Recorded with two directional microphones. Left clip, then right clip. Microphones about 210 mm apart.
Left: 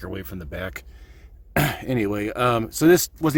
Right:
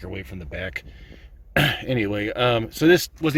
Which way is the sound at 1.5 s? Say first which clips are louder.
Right 2 dB; 5° left (ahead or behind).